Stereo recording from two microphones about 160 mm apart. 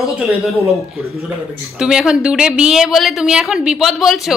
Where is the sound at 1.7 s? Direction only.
5° right (ahead or behind).